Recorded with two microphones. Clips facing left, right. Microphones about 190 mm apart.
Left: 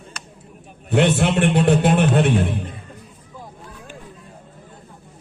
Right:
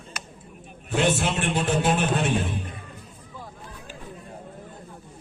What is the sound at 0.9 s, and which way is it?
A man's voice, 65° left (ahead or behind).